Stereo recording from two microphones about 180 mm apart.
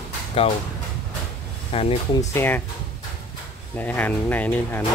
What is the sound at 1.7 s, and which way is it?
Speech, 35° left (ahead or behind).